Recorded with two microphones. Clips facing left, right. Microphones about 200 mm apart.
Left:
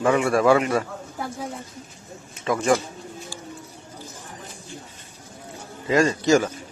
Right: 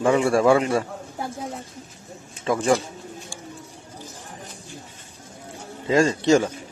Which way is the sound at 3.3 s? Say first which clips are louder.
Left 1 dB; 25° right (ahead or behind).